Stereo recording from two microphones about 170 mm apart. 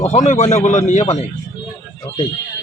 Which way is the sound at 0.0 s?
45° left (ahead or behind).